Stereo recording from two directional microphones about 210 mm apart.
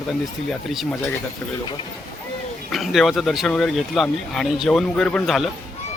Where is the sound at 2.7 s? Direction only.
Centre (ahead or behind).